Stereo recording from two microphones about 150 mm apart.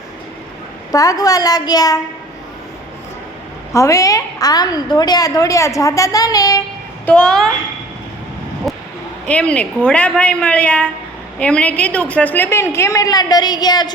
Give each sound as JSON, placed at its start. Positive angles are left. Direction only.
{"t": 0.9, "sound": "a woman's voice", "side_deg": 25}
{"t": 3.7, "sound": "a woman's voice", "side_deg": 20}
{"t": 7.0, "sound": "a child's voice", "side_deg": 5}
{"t": 8.7, "sound": "a sound", "side_deg": 0}
{"t": 9.2, "sound": "a woman's voice", "side_deg": 5}